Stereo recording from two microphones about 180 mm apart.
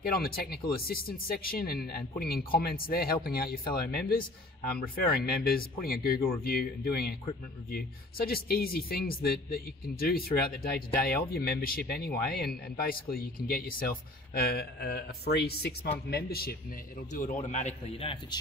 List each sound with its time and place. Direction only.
0.0 s speech: 55° left (ahead or behind)
17.1 s a man's voice: 45° left (ahead or behind)